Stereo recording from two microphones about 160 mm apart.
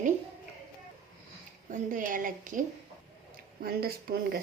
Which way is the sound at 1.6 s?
55° right (ahead or behind).